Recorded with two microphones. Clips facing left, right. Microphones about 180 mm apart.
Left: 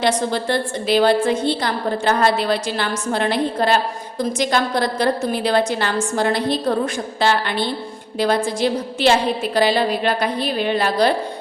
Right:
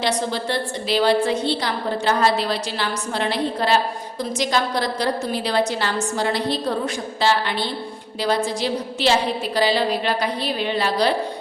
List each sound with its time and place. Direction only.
0.0 s a woman's voice: 50° left (ahead or behind)